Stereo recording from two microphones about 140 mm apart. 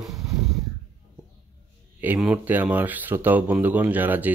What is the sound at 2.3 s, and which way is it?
Speech, 15° right (ahead or behind).